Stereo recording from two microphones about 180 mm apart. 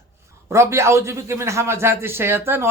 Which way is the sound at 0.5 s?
15° right (ahead or behind).